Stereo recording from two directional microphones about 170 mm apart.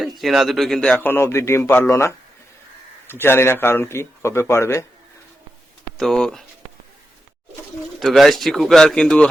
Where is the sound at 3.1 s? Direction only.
15° left (ahead or behind).